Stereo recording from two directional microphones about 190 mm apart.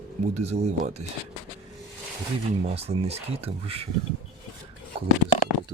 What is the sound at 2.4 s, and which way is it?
Speech, 35° right (ahead or behind).